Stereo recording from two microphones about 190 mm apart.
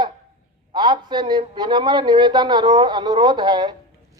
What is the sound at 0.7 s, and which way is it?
Speech, 25° right (ahead or behind).